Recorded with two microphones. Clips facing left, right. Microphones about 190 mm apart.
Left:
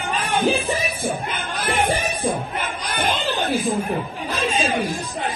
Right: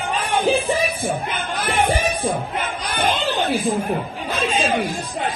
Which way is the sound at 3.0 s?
55° right (ahead or behind).